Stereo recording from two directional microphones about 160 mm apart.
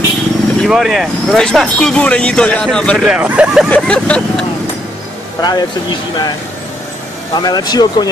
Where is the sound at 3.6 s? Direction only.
5° left (ahead or behind).